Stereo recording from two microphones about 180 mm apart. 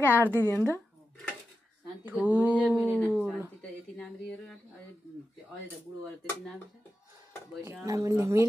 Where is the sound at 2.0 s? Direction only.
10° right (ahead or behind).